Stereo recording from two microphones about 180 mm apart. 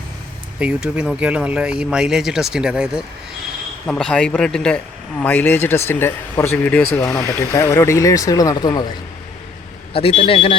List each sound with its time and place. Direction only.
0.6 s speech: 5° right (ahead or behind); by 8.9 s 25° left (ahead or behind)
9.9 s a man's voice: 30° left (ahead or behind)